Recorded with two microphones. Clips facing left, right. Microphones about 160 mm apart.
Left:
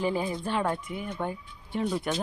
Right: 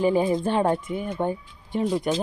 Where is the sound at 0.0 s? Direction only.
20° right (ahead or behind).